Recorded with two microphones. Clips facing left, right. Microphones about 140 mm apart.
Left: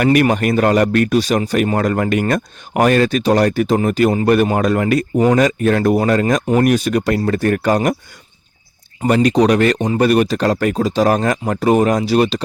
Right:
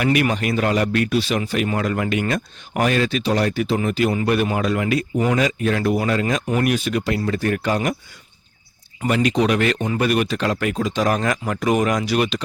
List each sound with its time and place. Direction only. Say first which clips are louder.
0.0 s speech: left 6 dB; 45° left (ahead or behind)
9.0 s speech: left 6 dB; 40° left (ahead or behind)